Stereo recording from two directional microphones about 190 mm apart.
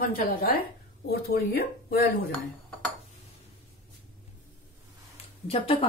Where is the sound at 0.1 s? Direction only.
50° left (ahead or behind).